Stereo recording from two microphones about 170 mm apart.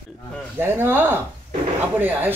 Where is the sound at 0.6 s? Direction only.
15° right (ahead or behind).